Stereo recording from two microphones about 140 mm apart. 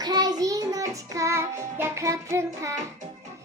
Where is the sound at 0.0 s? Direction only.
30° right (ahead or behind).